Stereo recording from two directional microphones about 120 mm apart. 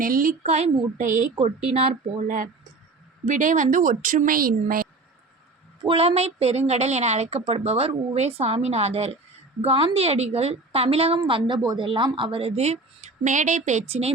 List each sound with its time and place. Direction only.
0.4 s speech: 75° right (ahead or behind); by 1.3 s 90° right
1.4 s a woman's voice: 55° right (ahead or behind); by 4.3 s 90° right
5.8 s a woman's voice: 55° right (ahead or behind)
11.3 s a woman's voice: 45° right (ahead or behind)